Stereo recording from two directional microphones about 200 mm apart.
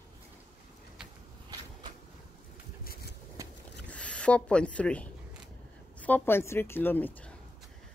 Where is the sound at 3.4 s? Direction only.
15° right (ahead or behind).